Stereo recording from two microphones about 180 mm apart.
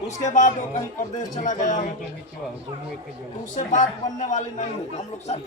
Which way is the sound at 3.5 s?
45° left (ahead or behind).